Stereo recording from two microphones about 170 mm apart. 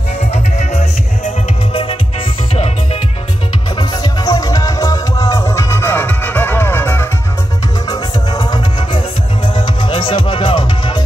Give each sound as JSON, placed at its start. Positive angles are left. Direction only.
{"t": 0.3, "sound": "music", "side_deg": 40}
{"t": 3.7, "sound": "music", "side_deg": 25}
{"t": 7.9, "sound": "music", "side_deg": 25}